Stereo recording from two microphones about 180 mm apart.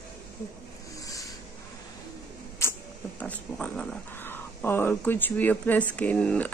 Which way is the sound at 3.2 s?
10° left (ahead or behind).